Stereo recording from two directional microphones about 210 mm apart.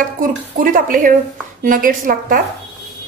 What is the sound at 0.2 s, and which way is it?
A woman's voice, 40° right (ahead or behind).